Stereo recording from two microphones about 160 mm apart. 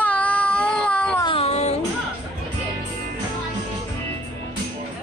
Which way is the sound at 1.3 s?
40° left (ahead or behind).